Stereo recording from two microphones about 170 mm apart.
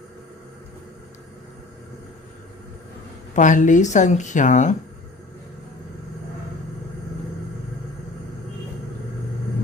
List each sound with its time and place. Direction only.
3.3 s speech: 50° left (ahead or behind)